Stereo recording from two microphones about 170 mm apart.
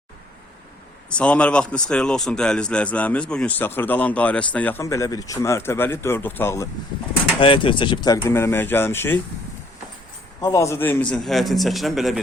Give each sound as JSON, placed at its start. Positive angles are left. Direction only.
{"t": 1.1, "sound": "a man's voice", "side_deg": 5}
{"t": 7.3, "sound": "a man's voice", "side_deg": 30}
{"t": 10.4, "sound": "a man's voice", "side_deg": 20}